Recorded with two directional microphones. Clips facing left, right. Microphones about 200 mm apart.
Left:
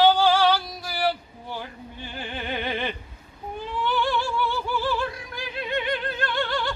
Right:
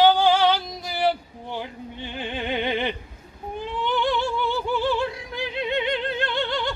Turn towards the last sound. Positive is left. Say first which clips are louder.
# right 1 dB
turn(degrees=-20)  # may be behind; listen again after turning